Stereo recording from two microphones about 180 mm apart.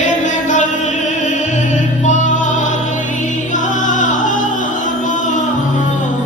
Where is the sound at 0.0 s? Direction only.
45° left (ahead or behind).